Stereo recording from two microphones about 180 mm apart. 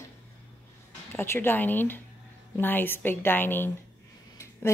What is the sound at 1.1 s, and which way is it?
A woman's voice, 15° left (ahead or behind).